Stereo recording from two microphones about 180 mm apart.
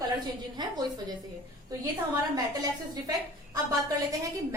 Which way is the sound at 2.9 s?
20° right (ahead or behind).